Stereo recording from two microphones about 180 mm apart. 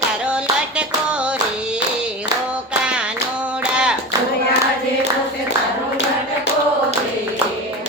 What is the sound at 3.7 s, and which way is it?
Clapping, 5° right (ahead or behind).